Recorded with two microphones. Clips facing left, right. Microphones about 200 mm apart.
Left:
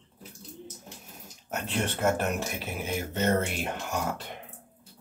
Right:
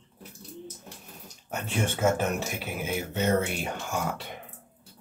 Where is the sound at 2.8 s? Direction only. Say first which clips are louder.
Even; 5° right (ahead or behind).